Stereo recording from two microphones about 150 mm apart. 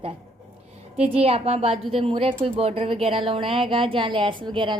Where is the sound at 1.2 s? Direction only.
40° right (ahead or behind).